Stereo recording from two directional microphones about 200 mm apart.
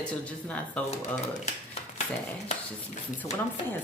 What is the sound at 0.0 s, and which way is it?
Speech, 5° left (ahead or behind).